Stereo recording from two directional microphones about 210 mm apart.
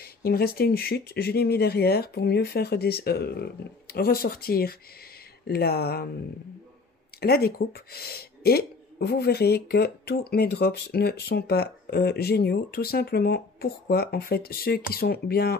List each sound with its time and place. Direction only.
0.0 s speech: 45° left (ahead or behind)
7.2 s speech: 45° left (ahead or behind)